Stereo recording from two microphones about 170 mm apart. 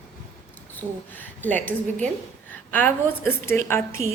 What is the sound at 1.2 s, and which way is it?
Speech, 10° left (ahead or behind).